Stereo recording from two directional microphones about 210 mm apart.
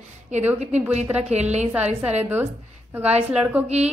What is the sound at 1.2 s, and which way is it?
Speech, 30° right (ahead or behind).